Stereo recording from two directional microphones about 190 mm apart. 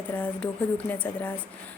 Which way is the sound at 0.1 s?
5° left (ahead or behind).